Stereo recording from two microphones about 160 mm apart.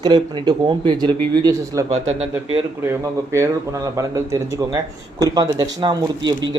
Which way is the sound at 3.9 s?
20° right (ahead or behind).